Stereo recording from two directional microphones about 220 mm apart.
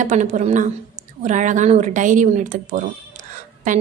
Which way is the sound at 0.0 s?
35° right (ahead or behind).